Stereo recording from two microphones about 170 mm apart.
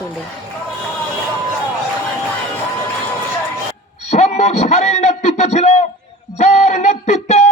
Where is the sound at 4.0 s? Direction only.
40° left (ahead or behind).